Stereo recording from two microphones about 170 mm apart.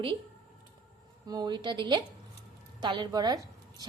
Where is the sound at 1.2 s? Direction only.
25° right (ahead or behind).